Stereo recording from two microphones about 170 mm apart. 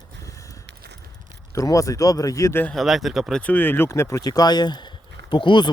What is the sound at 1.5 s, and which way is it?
Speech, 20° left (ahead or behind).